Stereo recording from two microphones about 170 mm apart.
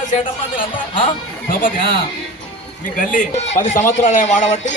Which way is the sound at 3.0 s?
50° left (ahead or behind).